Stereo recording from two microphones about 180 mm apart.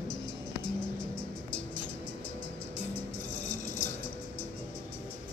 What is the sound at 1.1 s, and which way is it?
Music, 5° left (ahead or behind).